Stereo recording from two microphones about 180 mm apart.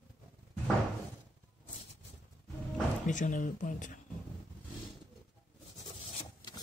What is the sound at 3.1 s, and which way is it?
Speech, 45° left (ahead or behind).